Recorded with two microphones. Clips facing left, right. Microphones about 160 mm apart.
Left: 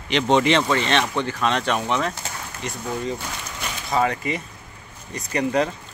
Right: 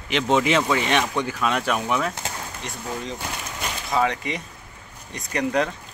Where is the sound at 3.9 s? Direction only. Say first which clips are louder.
Left 1 dB; centre (ahead or behind).